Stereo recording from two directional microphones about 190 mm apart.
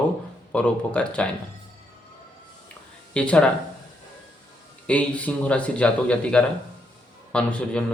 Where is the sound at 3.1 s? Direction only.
5° left (ahead or behind).